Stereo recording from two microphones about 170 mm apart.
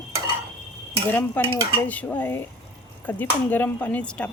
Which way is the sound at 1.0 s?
10° left (ahead or behind).